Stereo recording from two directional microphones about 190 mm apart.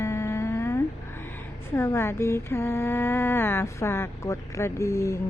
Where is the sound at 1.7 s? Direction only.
10° left (ahead or behind).